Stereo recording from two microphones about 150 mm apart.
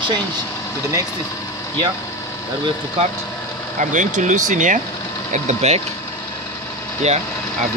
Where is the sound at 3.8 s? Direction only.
55° right (ahead or behind).